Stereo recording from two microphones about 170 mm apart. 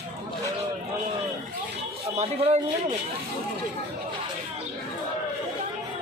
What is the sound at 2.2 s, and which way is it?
Speech, 40° right (ahead or behind).